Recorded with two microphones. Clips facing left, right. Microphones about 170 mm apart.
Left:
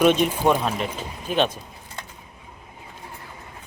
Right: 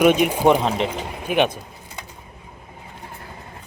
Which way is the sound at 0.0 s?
10° right (ahead or behind).